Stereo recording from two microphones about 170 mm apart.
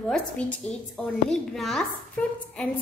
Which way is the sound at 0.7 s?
10° left (ahead or behind).